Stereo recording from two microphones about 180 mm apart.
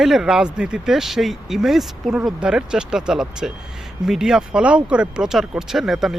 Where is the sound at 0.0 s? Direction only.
Centre (ahead or behind).